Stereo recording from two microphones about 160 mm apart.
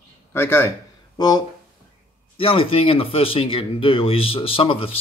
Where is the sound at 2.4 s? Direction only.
35° left (ahead or behind).